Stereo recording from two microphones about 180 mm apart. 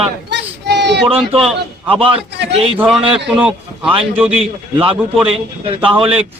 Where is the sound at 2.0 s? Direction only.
30° right (ahead or behind).